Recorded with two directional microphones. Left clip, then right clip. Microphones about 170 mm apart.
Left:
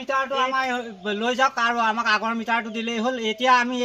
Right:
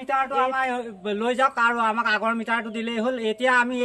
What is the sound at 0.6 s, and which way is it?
A man's voice, 15° right (ahead or behind).